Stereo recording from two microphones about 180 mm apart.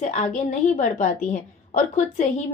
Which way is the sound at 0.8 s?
45° left (ahead or behind).